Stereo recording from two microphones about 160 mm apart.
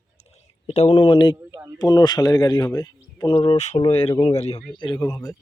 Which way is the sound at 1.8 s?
25° left (ahead or behind).